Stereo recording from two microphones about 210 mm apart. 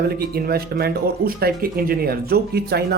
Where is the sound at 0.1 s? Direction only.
45° right (ahead or behind).